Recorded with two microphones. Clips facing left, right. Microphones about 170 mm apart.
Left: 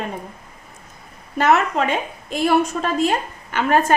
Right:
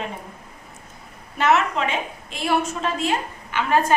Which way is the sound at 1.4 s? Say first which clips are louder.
Left 3 dB; 40° left (ahead or behind).